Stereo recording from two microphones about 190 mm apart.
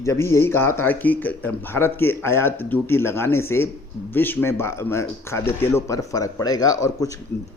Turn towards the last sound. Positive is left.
turn(degrees=20)  # may be behind; listen again after turning